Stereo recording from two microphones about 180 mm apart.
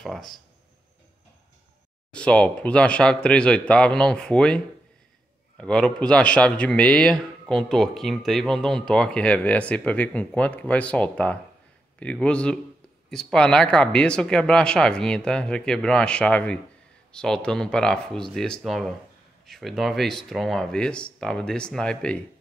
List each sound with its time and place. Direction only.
0.0 s speech: centre (ahead or behind)
2.1 s speech: 5° left (ahead or behind)
5.6 s speech: 5° left (ahead or behind)